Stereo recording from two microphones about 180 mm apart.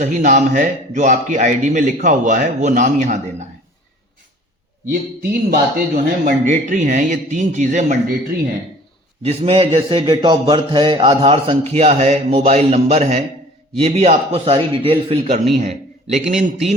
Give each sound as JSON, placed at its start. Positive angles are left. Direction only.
{"t": 0.0, "sound": "a man's voice", "side_deg": -45}
{"t": 4.9, "sound": "a man's voice", "side_deg": -55}
{"t": 9.2, "sound": "a man's voice", "side_deg": -35}